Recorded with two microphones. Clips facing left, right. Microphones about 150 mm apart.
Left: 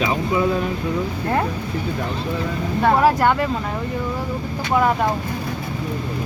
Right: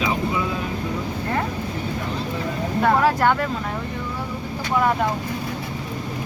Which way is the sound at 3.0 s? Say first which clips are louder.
Left 2 dB; 5° left (ahead or behind).